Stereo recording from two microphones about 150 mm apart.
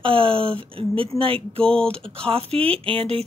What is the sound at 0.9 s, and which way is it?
Speech, 40° right (ahead or behind).